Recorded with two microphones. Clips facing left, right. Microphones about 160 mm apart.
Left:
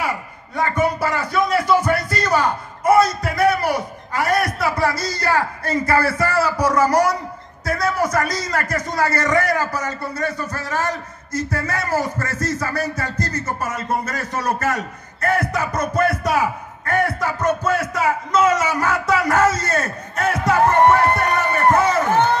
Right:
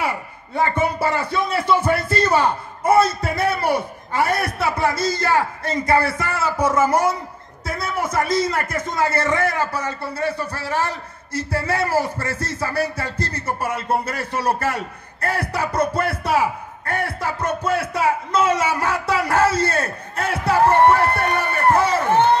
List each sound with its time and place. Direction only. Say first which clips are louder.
0.6 s a man's voice: even; 25° right (ahead or behind)